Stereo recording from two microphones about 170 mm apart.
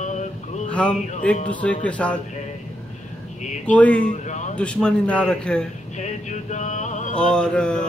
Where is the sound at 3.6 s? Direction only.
10° left (ahead or behind).